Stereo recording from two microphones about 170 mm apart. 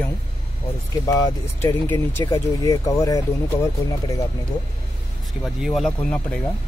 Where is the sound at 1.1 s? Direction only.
20° left (ahead or behind).